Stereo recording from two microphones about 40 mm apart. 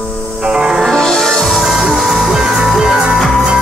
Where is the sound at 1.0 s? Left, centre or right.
Centre.